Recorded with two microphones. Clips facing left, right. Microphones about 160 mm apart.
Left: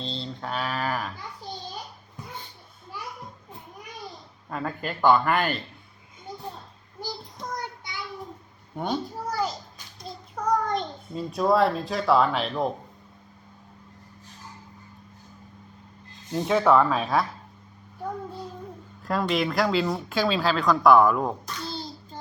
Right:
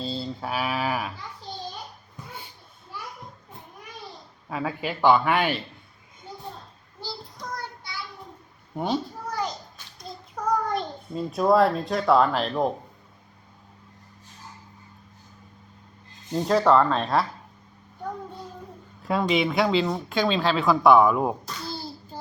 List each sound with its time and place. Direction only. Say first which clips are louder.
0.0 s speech: right 3 dB; 5° right (ahead or behind)
4.4 s speech: right 2 dB; 5° right (ahead or behind)
7.0 s child singing: left 1 dB; 15° left (ahead or behind)
8.7 s speech: right 2 dB; 5° right (ahead or behind)
9.3 s a sound: left 1 dB; 5° left (ahead or behind)
10.1 s a child's voice: left 1 dB; centre (ahead or behind)
16.3 s speech: right 1 dB; centre (ahead or behind)
19.0 s speech: right 2 dB; centre (ahead or behind)